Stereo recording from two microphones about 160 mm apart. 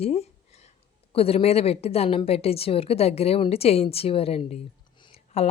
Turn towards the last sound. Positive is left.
turn(degrees=40)  # may be behind; listen again after turning